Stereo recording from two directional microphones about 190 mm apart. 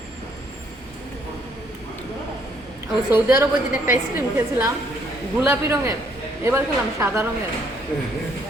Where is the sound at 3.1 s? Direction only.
15° right (ahead or behind).